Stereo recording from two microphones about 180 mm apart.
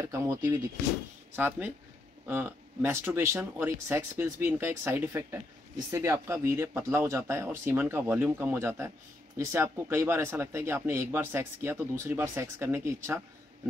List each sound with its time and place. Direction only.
0.0 s speech: 15° right (ahead or behind)